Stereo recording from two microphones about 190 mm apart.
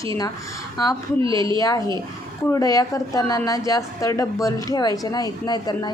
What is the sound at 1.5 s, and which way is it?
A woman's voice, 20° left (ahead or behind).